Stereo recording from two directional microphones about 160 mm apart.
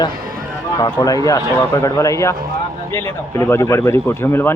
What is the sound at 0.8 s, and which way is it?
A man's voice, 25° left (ahead or behind).